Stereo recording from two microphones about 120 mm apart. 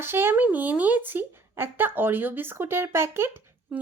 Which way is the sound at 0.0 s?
20° right (ahead or behind).